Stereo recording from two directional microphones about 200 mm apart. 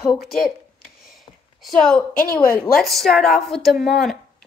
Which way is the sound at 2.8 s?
Centre (ahead or behind).